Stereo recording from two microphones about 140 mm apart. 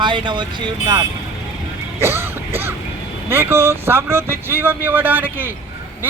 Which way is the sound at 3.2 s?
15° right (ahead or behind).